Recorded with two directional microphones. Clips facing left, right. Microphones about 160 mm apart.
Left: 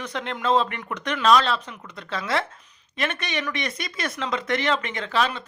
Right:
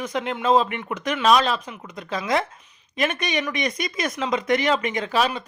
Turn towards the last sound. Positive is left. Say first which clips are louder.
# right 2 dB
turn(degrees=-15)  # may be behind; listen again after turning